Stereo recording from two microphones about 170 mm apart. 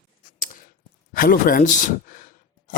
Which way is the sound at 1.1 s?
55° left (ahead or behind).